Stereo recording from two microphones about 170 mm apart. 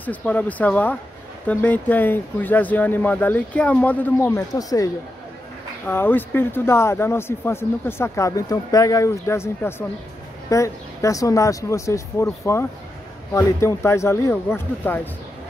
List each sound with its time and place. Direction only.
0.0 s speech: 10° left (ahead or behind)
5.9 s speech: 10° left (ahead or behind)